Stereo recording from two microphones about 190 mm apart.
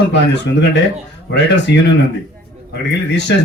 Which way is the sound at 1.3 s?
65° left (ahead or behind).